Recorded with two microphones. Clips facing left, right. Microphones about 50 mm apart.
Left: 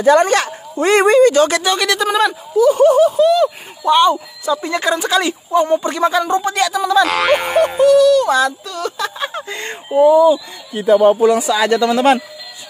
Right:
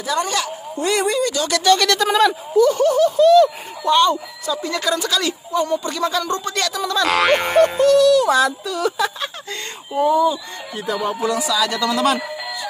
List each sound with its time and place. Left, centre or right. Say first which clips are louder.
0.0 s speech: left 10 dB; left
1.6 s speech: right 1 dB; centre
2.7 s speech: left 5 dB; centre
4.5 s speech: left 4 dB; left; by 9.1 s centre
9.2 s speech: left 5 dB; centre
9.9 s speech: left 7 dB; centre
11.2 s speech: left 6 dB; left